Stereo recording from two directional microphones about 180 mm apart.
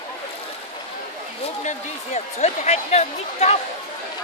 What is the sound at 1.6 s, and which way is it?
Speech, 40° left (ahead or behind).